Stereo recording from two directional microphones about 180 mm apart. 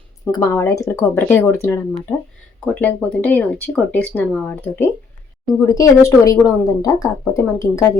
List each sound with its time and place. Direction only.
0.3 s speech: 20° left (ahead or behind)